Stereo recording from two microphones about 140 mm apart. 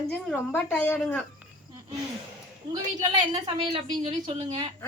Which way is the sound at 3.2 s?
35° right (ahead or behind).